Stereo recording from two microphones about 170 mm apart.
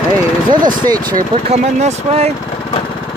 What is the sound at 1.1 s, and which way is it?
Speech, 40° right (ahead or behind).